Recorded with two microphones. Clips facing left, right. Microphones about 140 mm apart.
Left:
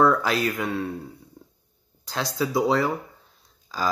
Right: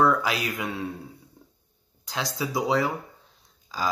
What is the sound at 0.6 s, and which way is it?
Speech, 15° right (ahead or behind).